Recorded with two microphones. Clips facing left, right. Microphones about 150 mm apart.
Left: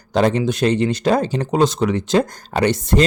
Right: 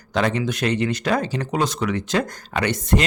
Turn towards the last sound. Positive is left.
turn(degrees=30)  # may be behind; listen again after turning